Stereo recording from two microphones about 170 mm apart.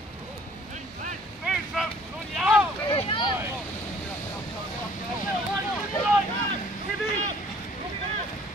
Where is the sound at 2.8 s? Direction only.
30° left (ahead or behind).